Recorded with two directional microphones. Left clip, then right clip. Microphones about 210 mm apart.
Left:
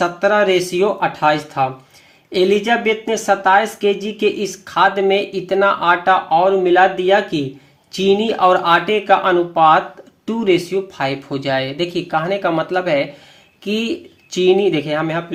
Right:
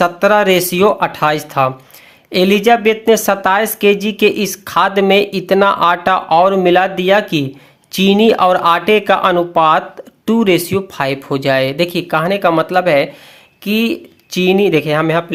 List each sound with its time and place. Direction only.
0.0 s speech: 40° right (ahead or behind)